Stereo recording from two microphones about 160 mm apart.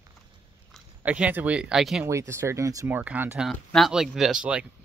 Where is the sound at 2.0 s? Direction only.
15° right (ahead or behind).